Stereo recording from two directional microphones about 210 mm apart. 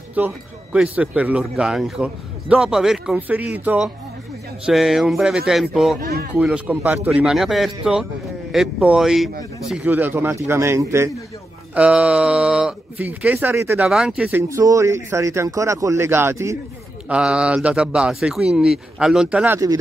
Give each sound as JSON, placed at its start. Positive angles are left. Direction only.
{"t": 0.2, "sound": "a man's voice", "side_deg": -10}
{"t": 5.9, "sound": "speech", "side_deg": -45}
{"t": 6.3, "sound": "a man's voice", "side_deg": -5}